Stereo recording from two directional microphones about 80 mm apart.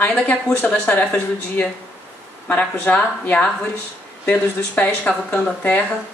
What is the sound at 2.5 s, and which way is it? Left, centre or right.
A woman's voice, left.